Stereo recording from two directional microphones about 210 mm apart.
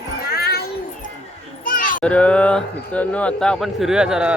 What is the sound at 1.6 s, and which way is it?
Children playing, 40° left (ahead or behind).